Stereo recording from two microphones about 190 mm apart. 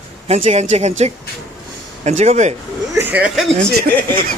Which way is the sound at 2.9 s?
10° right (ahead or behind).